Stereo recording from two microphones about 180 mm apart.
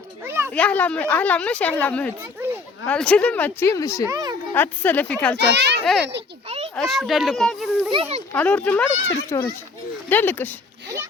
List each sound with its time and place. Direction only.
0.3 s a sound: 15° right (ahead or behind)
0.5 s a woman's voice: 5° left (ahead or behind)
4.1 s a sound: 20° right (ahead or behind)
4.5 s a woman's voice: 10° left (ahead or behind)
5.4 s a child's voice: 70° right (ahead or behind)
5.8 s speech: centre (ahead or behind)
7.9 s a child's voice: 30° right (ahead or behind)
8.3 s a woman's voice: 10° left (ahead or behind)
9.3 s speech: 20° left (ahead or behind)
10.1 s a woman's voice: 10° left (ahead or behind)